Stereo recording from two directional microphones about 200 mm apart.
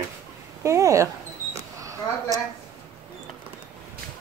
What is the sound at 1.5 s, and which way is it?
Camera, 15° right (ahead or behind).